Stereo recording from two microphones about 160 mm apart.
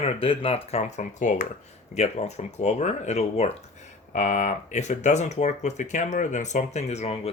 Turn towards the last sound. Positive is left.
turn(degrees=40)  # may be behind; listen again after turning